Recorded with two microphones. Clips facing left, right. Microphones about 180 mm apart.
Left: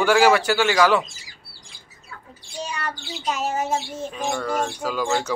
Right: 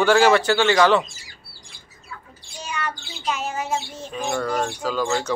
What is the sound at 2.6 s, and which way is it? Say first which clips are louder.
Child singing: right 1 dB; 35° left (ahead or behind).